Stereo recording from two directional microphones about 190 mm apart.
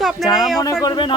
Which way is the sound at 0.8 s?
25° left (ahead or behind).